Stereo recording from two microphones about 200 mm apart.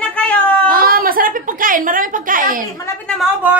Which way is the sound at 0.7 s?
45° right (ahead or behind).